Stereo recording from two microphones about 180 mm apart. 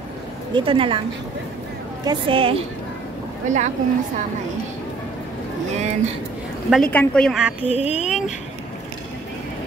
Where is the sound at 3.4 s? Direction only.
40° right (ahead or behind).